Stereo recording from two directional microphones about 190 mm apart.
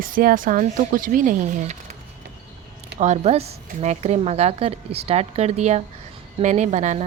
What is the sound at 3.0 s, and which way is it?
A woman's voice, 35° right (ahead or behind).